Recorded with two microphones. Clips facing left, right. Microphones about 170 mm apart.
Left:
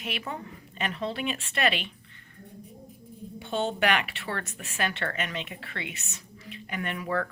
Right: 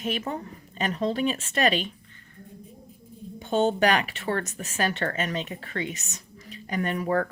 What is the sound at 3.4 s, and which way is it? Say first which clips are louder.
Speech: right 5 dB; 40° right (ahead or behind).